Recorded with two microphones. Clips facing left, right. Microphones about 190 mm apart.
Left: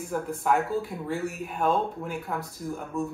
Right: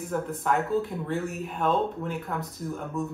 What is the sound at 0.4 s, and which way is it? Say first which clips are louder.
Speech: even; centre (ahead or behind).